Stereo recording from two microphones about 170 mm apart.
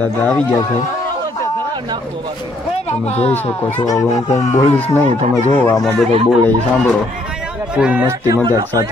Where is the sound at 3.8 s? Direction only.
20° left (ahead or behind).